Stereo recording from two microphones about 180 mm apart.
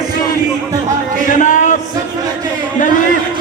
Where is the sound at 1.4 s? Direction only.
45° left (ahead or behind).